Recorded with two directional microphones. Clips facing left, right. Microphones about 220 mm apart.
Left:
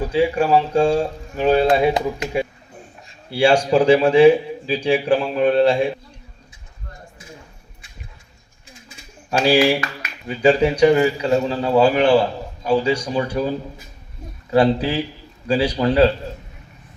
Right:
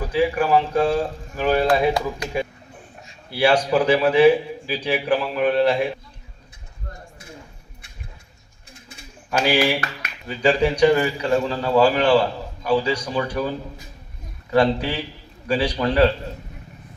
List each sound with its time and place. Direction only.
0.0 s speech: 25° left (ahead or behind)
9.5 s speech: 30° left (ahead or behind)
14.5 s speech: 25° left (ahead or behind)